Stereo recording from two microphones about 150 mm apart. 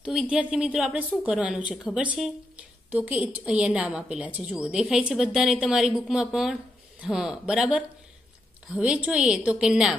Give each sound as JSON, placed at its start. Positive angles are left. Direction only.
{"t": 0.0, "sound": "a woman's voice", "side_deg": -5}